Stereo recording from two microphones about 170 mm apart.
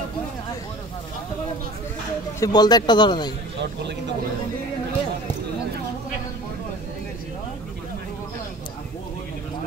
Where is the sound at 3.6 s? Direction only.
90° right.